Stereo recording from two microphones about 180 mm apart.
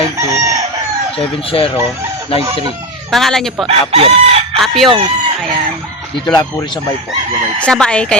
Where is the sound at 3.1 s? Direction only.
Centre (ahead or behind).